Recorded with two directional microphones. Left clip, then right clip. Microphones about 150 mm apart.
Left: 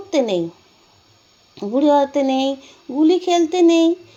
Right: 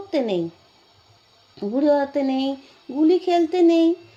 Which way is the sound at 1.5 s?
20° left (ahead or behind).